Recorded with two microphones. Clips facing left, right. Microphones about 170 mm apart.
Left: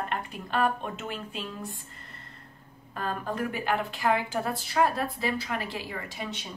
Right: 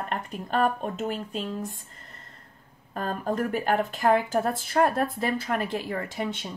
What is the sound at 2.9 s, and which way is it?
A woman's voice, 45° right (ahead or behind).